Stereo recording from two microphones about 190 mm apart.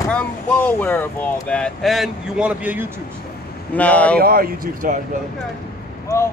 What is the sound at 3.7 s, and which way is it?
Speech, 5° left (ahead or behind).